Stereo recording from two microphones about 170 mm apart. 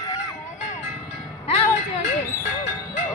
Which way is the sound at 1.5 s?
35° left (ahead or behind).